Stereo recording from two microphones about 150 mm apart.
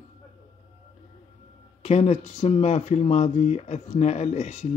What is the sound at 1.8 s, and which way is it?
Speech, 45° left (ahead or behind).